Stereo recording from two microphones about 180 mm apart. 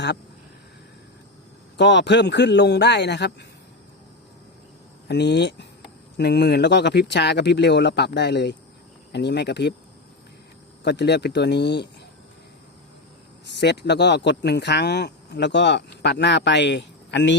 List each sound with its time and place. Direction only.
1.7 s speech: 75° left (ahead or behind)
5.0 s speech: 70° left (ahead or behind)
10.8 s speech: 70° left (ahead or behind)
13.5 s speech: 70° left (ahead or behind)